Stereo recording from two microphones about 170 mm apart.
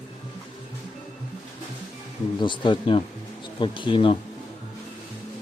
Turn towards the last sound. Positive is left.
turn(degrees=30)  # may be behind; listen again after turning